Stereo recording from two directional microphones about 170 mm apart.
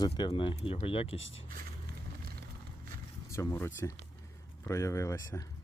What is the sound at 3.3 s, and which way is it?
Speech, 15° left (ahead or behind).